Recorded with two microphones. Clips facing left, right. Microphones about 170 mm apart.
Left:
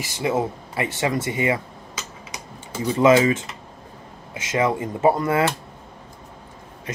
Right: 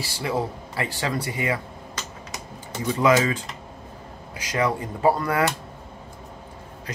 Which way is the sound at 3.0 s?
25° left (ahead or behind).